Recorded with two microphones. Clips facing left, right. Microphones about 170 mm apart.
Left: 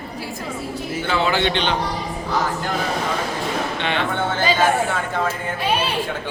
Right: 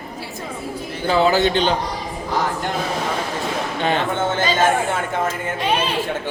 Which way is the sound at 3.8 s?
40° right (ahead or behind).